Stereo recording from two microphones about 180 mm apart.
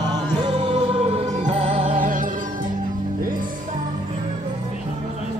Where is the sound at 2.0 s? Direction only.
45° right (ahead or behind).